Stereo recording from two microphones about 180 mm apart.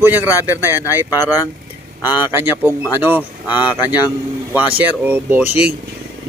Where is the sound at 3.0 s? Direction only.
10° right (ahead or behind).